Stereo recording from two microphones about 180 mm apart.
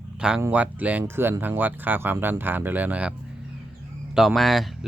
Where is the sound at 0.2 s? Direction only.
5° right (ahead or behind).